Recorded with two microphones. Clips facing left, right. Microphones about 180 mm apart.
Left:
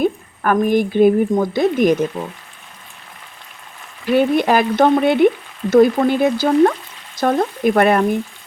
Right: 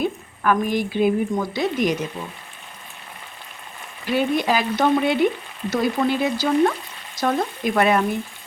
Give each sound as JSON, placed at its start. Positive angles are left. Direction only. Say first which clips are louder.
{"t": 0.0, "sound": "speech", "louder": "left 4 dB", "side_deg": 50}
{"t": 4.1, "sound": "frying", "louder": "left 6 dB", "side_deg": 55}
{"t": 5.7, "sound": "speech", "louder": "left 9 dB", "side_deg": 50}